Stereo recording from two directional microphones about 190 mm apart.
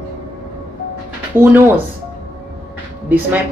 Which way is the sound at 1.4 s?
10° right (ahead or behind).